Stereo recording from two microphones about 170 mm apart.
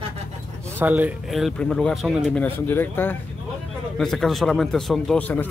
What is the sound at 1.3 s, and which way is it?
Speech, centre (ahead or behind).